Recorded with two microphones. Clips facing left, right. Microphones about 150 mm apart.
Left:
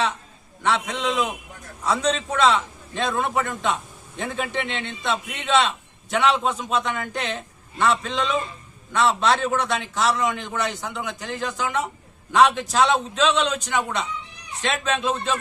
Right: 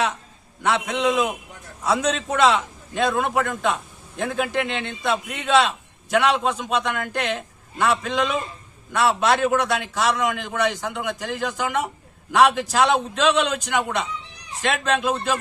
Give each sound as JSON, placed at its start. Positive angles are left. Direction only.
{"t": 0.6, "sound": "a man's voice", "side_deg": -10}